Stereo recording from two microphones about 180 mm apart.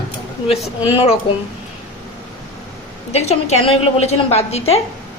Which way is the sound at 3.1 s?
35° left (ahead or behind).